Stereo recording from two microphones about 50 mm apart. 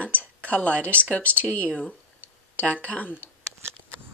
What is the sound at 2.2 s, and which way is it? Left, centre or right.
Speech, left.